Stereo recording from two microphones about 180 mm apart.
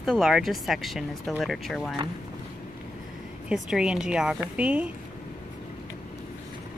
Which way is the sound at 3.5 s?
5° right (ahead or behind).